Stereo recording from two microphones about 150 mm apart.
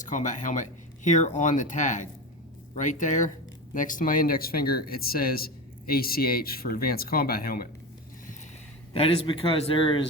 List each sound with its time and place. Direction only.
0.0 s speech: 55° left (ahead or behind); by 7.7 s 80° left
8.9 s a man's voice: 40° left (ahead or behind)